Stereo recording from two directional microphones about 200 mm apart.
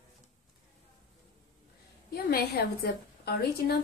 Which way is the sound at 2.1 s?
50° left (ahead or behind).